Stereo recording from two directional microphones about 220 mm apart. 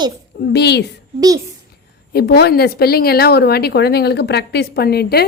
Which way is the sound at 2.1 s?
45° left (ahead or behind).